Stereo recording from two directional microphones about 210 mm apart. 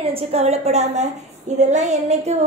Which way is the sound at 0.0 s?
30° right (ahead or behind).